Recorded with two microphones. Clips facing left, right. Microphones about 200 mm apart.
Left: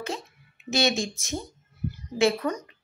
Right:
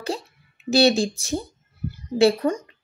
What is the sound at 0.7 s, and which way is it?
A woman's voice, 35° right (ahead or behind).